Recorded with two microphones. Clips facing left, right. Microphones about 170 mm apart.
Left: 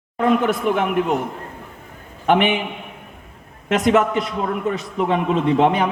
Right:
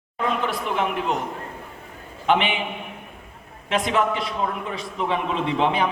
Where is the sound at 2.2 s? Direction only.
50° left (ahead or behind).